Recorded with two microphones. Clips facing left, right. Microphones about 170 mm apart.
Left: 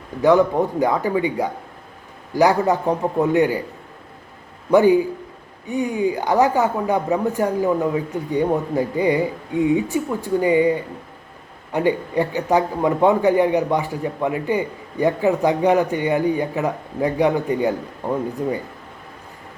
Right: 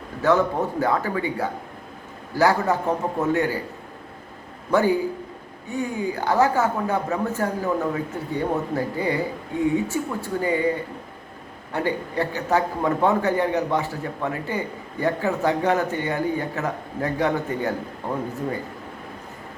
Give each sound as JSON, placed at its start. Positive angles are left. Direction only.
{"t": 0.2, "sound": "a man's voice", "side_deg": 15}
{"t": 4.7, "sound": "a man's voice", "side_deg": 15}
{"t": 11.7, "sound": "a man's voice", "side_deg": 15}